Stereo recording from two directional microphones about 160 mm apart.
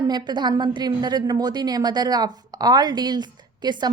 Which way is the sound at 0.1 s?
25° right (ahead or behind).